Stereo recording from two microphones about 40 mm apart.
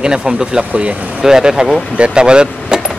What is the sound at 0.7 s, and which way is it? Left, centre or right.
Speech, right.